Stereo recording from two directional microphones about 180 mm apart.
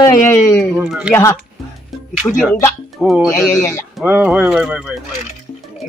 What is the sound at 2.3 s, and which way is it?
Speech, 20° left (ahead or behind).